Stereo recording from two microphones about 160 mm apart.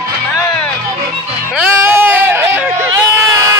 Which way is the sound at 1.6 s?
15° right (ahead or behind).